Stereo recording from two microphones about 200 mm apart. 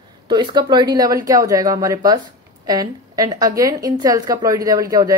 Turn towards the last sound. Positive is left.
turn(degrees=-15)  # may be behind; listen again after turning